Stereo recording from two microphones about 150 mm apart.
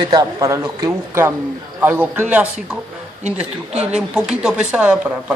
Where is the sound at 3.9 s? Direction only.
5° right (ahead or behind).